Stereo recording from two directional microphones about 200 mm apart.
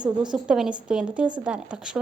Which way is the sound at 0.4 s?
5° right (ahead or behind).